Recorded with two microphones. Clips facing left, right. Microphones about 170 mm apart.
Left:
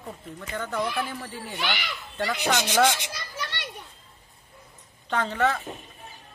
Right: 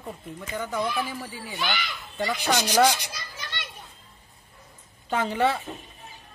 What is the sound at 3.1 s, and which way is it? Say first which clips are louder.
Children playing: left 3 dB; 65° left (ahead or behind).